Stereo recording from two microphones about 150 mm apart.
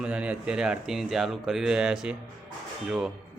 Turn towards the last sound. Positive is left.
turn(degrees=-5)  # may be behind; listen again after turning